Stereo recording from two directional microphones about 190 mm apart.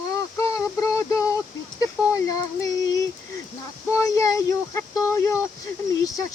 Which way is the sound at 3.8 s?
15° left (ahead or behind).